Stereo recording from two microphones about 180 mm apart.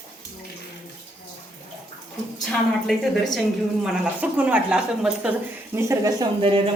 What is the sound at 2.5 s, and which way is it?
Speech, 5° left (ahead or behind).